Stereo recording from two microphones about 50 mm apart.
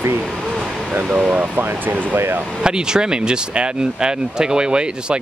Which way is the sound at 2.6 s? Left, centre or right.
Centre.